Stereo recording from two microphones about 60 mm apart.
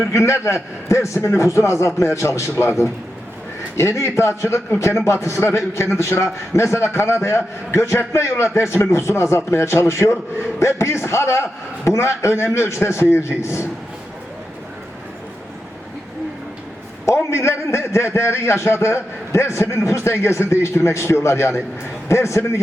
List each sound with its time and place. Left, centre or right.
0.0 s a man's voice: left
17.1 s a man's voice: left